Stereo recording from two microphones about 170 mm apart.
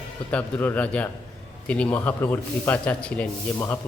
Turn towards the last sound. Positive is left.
turn(degrees=10)  # may be behind; listen again after turning